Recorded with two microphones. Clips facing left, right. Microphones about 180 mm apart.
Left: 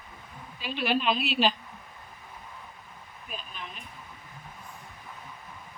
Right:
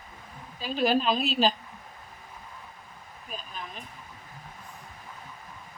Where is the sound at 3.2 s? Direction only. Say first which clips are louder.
Right 2 dB; 40° right (ahead or behind).